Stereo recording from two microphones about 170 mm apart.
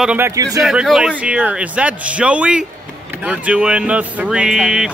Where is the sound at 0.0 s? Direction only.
10° right (ahead or behind).